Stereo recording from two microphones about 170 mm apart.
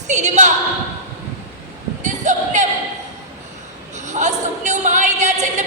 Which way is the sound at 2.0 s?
45° right (ahead or behind).